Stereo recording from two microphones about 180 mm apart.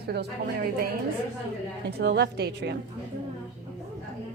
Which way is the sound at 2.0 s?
70° right (ahead or behind).